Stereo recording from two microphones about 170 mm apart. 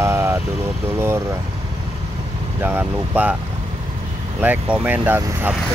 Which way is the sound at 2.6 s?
10° right (ahead or behind).